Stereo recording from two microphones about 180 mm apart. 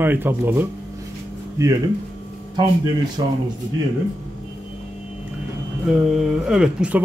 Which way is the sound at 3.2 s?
25° right (ahead or behind).